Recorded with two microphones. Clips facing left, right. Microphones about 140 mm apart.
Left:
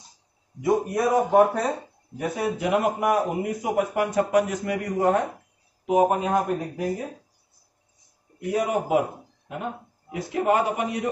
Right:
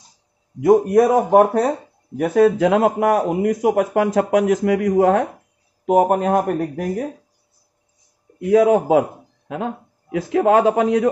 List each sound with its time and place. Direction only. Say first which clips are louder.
0.6 s speech: right 10 dB; 55° right (ahead or behind)
2.1 s a man's voice: right 12 dB; 75° right (ahead or behind); by 5.2 s 90° right
5.9 s speech: right 5 dB; 65° right (ahead or behind)
8.5 s a man's voice: right 10 dB; 90° right